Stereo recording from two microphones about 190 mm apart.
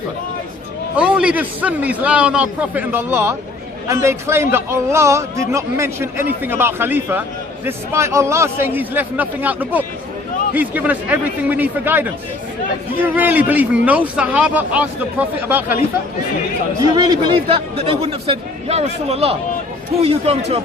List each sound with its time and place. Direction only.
0.9 s a man's voice: 5° right (ahead or behind)
16.9 s a man's voice: 20° right (ahead or behind)